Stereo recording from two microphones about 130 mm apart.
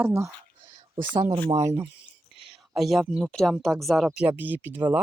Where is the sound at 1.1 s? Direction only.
35° right (ahead or behind).